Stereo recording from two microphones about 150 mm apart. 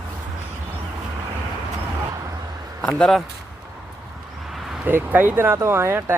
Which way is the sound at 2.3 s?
25° right (ahead or behind).